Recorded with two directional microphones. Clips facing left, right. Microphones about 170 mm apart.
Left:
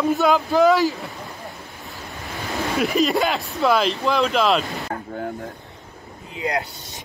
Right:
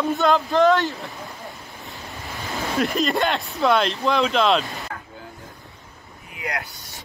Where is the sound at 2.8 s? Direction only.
5° left (ahead or behind).